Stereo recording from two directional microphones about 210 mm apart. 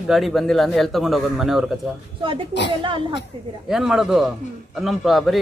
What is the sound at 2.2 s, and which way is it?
Speech, 25° right (ahead or behind).